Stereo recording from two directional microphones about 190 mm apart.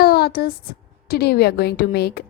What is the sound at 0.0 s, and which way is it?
A woman's voice, 55° left (ahead or behind).